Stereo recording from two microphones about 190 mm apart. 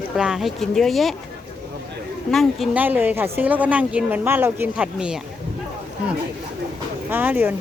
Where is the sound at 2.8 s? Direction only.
10° right (ahead or behind).